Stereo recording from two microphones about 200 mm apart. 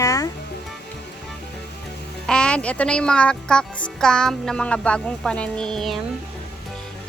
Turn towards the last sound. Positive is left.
turn(degrees=0)  # may be behind; listen again after turning